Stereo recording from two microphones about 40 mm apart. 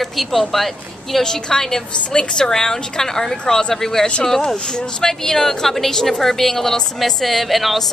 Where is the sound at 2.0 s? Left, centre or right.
Left.